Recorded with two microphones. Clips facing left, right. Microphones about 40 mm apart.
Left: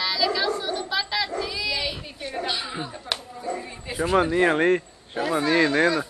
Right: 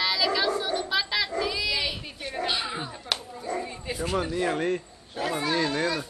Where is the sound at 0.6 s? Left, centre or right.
Centre.